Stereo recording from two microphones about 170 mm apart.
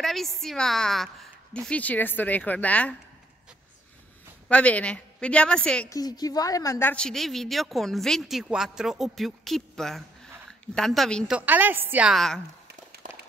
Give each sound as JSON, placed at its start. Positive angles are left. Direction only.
{"t": 0.0, "sound": "a woman's voice", "side_deg": 0}
{"t": 4.5, "sound": "a woman's voice", "side_deg": 10}
{"t": 5.9, "sound": "a woman's voice", "side_deg": 20}
{"t": 11.3, "sound": "a woman's voice", "side_deg": -10}
{"t": 13.0, "sound": "a sound", "side_deg": -50}